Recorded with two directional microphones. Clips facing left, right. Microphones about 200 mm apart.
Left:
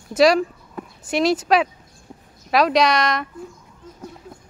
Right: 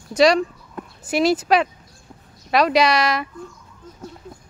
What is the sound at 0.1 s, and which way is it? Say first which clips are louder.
Speech: even; 5° left (ahead or behind).